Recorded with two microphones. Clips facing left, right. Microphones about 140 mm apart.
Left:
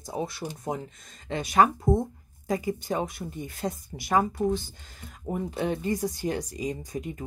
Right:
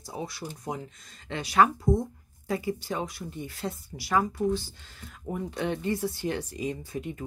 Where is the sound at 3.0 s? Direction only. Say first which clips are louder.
Left 2 dB; 50° left (ahead or behind).